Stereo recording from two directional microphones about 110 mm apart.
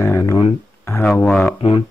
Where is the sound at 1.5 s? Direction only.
50° left (ahead or behind).